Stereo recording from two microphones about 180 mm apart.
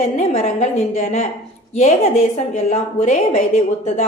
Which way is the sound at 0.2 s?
40° left (ahead or behind).